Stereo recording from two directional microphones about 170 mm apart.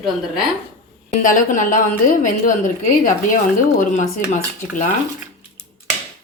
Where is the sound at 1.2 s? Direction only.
50° left (ahead or behind).